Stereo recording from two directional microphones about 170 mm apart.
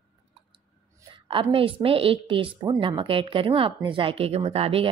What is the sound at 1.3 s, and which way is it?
A woman's voice, 30° right (ahead or behind).